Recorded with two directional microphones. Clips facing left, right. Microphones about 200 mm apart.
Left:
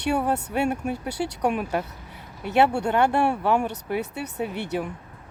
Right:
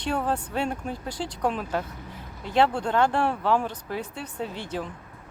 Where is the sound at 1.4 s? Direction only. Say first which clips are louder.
Left 2 dB; 10° left (ahead or behind).